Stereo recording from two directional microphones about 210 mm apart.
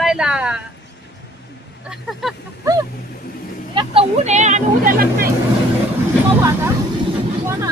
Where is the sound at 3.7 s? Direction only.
25° right (ahead or behind).